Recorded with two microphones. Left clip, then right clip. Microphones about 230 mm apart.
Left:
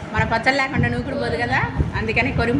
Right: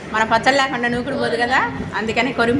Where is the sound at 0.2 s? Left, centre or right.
Centre.